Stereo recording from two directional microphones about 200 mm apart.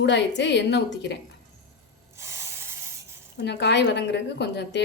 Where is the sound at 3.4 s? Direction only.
60° left (ahead or behind).